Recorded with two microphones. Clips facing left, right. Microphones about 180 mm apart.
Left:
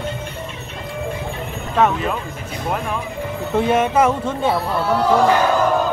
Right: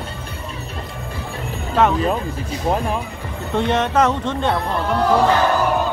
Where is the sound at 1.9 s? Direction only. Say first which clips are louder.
Right 3 dB; 35° right (ahead or behind).